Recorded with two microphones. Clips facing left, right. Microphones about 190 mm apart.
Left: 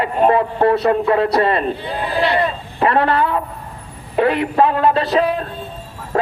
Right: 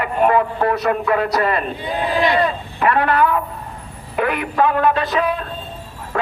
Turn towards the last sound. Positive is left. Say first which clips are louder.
# left 4 dB
turn(degrees=30)  # may be behind; listen again after turning